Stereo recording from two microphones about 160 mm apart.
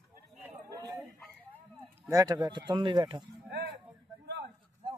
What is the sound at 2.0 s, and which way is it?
Speech, 20° right (ahead or behind).